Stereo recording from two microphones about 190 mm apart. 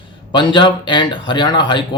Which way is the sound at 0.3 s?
25° left (ahead or behind).